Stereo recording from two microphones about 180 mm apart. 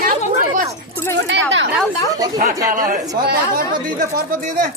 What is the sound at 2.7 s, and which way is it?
Speech, 50° right (ahead or behind).